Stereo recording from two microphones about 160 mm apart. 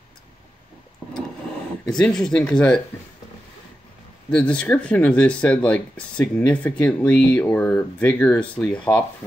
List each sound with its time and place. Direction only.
1.9 s speech: 5° left (ahead or behind)
4.3 s speech: 5° left (ahead or behind)